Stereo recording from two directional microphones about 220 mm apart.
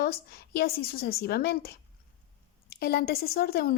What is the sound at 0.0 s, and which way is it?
A woman's voice, 45° left (ahead or behind).